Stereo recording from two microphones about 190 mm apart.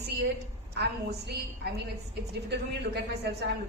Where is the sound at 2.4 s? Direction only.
65° right (ahead or behind).